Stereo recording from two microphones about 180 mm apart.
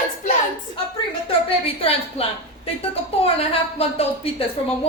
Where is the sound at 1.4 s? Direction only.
30° left (ahead or behind).